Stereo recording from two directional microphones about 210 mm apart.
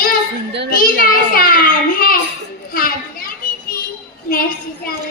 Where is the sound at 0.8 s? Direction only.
45° left (ahead or behind).